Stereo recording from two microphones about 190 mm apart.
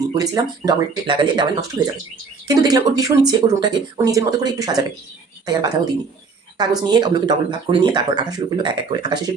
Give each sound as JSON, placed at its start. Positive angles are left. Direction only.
{"t": 0.1, "sound": "speech", "side_deg": -20}
{"t": 2.5, "sound": "speech", "side_deg": -20}